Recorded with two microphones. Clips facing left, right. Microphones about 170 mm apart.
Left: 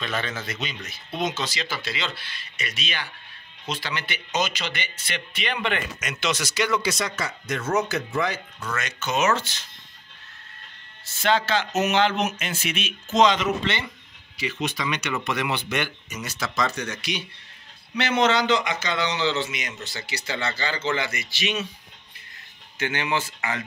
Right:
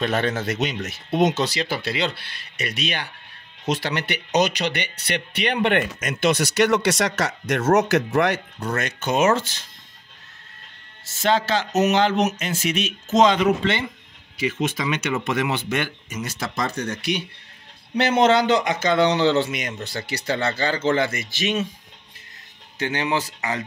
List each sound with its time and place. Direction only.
0.0 s speech: 60° right (ahead or behind)
0.4 s speech: 70° right (ahead or behind)
8.7 s speech: 55° right (ahead or behind)
11.1 s speech: 40° right (ahead or behind)
16.3 s speech: 30° right (ahead or behind)
17.9 s speech: 50° right (ahead or behind)
22.8 s speech: 35° right (ahead or behind)